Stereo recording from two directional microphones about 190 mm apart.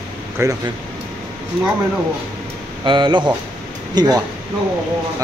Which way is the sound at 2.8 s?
25° right (ahead or behind).